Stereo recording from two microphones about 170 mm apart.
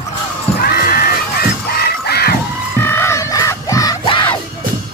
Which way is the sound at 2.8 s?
15° left (ahead or behind).